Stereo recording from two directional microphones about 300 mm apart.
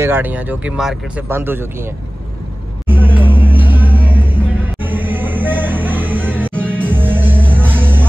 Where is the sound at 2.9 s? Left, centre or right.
Centre.